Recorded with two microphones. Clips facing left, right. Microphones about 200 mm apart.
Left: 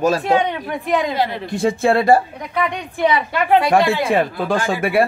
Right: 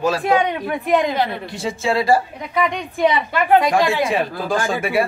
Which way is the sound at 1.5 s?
55° left (ahead or behind).